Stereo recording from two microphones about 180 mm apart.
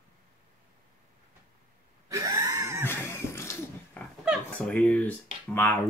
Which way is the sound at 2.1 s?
20° right (ahead or behind).